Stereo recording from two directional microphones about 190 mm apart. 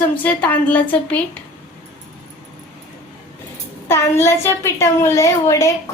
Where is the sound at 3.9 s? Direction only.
15° left (ahead or behind).